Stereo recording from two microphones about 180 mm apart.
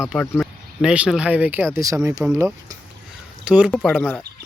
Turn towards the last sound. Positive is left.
turn(degrees=5)  # may be behind; listen again after turning